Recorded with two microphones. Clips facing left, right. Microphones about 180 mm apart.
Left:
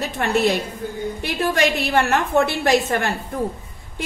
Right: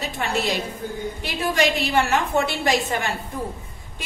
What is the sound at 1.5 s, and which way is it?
A woman's voice, 60° left (ahead or behind).